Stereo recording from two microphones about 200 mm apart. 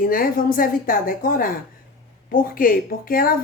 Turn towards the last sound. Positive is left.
turn(degrees=45)  # may be behind; listen again after turning